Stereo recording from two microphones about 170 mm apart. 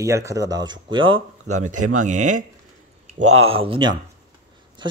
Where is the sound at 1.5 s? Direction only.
45° right (ahead or behind).